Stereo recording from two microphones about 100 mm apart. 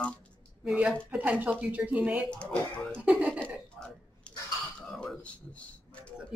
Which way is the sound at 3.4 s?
10° left (ahead or behind).